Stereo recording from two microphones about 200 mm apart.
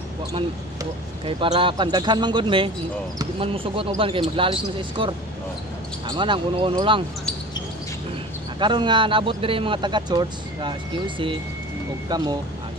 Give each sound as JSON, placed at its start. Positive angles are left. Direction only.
{"t": 1.2, "sound": "speech", "side_deg": -25}
{"t": 8.5, "sound": "speech", "side_deg": -20}